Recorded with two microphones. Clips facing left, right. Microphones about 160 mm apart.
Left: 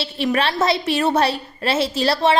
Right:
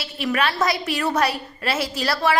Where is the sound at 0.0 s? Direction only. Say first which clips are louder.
Left 3 dB; 25° left (ahead or behind).